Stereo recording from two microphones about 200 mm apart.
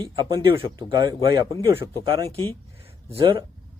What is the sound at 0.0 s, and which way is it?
A man's voice, 20° right (ahead or behind).